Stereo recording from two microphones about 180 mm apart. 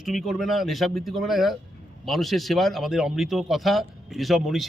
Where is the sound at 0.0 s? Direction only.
Centre (ahead or behind).